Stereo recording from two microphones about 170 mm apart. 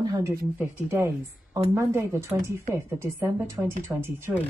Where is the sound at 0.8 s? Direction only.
15° right (ahead or behind).